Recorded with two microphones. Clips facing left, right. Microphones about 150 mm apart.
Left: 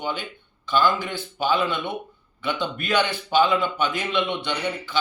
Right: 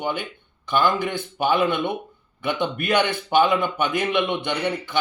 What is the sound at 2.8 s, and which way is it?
A man's voice, 55° right (ahead or behind).